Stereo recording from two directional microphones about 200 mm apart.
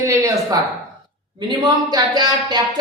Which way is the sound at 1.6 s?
20° right (ahead or behind).